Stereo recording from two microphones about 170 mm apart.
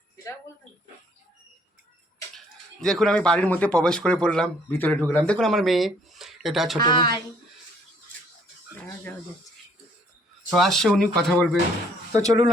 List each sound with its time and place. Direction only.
2.8 s speech: 5° left (ahead or behind)
6.7 s a woman's voice: 25° left (ahead or behind)
10.5 s speech: centre (ahead or behind)
12.1 s speech: 20° right (ahead or behind)